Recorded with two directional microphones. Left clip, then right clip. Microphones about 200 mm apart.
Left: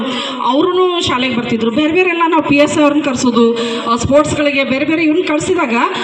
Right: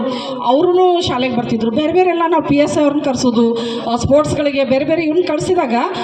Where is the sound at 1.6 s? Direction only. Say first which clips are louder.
Left 1 dB; 50° right (ahead or behind).